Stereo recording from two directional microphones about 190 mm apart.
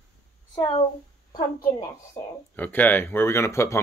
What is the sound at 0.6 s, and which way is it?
Speech, 30° left (ahead or behind).